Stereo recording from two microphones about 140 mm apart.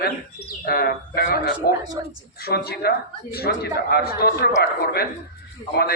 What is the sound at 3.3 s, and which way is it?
Speech, 90° left.